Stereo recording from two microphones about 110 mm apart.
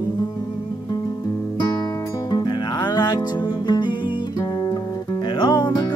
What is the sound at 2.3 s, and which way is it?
Music, 40° left (ahead or behind).